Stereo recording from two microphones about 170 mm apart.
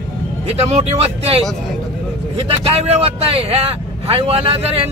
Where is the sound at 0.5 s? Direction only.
40° right (ahead or behind).